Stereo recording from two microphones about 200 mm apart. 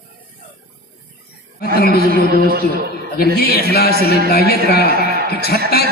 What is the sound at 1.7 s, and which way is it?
Speech, 50° left (ahead or behind).